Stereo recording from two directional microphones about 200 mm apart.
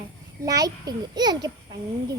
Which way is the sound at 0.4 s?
20° right (ahead or behind).